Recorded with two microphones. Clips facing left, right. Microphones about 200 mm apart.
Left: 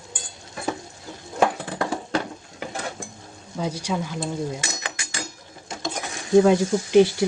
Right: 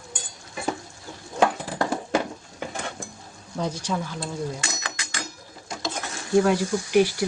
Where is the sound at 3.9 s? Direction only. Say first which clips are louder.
Left 2 dB; 15° left (ahead or behind).